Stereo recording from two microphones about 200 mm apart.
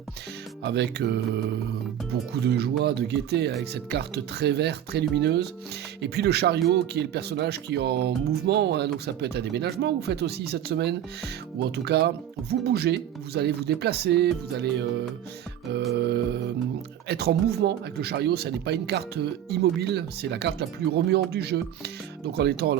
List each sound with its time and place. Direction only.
0.6 s speech: 55° right (ahead or behind)
2.5 s speech: 55° right (ahead or behind)
16.0 s speech: 55° right (ahead or behind)